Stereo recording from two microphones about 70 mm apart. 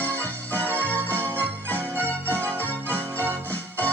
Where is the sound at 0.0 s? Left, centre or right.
Left.